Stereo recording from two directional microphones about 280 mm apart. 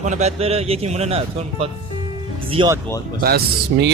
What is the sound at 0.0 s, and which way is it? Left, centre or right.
Speech, right.